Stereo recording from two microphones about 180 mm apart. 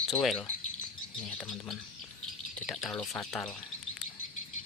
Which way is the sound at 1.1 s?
5° left (ahead or behind).